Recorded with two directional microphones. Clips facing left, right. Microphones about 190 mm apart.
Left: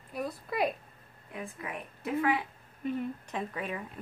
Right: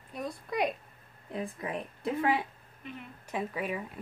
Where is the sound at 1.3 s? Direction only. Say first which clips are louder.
Right 4 dB; 30° right (ahead or behind).